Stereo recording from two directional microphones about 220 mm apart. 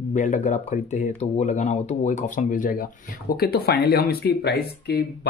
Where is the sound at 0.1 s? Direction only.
35° left (ahead or behind).